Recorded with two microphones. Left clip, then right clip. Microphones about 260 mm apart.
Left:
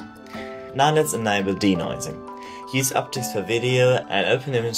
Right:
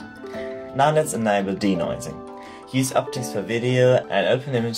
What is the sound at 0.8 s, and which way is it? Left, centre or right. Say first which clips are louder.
Speech: even; left.